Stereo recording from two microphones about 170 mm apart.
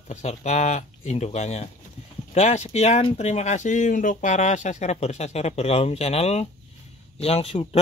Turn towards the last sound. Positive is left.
turn(degrees=35)  # may be behind; listen again after turning